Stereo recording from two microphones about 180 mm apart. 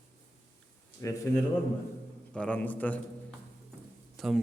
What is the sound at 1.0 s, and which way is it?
A man's voice, 15° left (ahead or behind).